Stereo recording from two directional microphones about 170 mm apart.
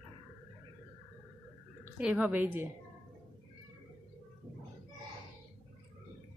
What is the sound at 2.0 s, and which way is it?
Speech, 10° right (ahead or behind).